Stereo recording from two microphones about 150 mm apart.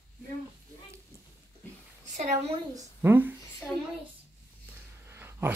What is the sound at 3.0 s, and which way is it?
Speech, 15° right (ahead or behind).